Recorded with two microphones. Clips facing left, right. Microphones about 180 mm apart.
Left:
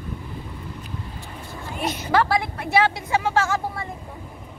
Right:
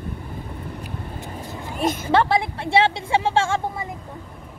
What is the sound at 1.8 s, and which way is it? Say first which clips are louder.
Speech: right 5 dB; 50° right (ahead or behind).